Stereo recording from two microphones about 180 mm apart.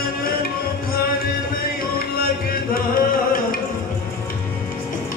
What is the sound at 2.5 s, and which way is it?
Music, 55° left (ahead or behind).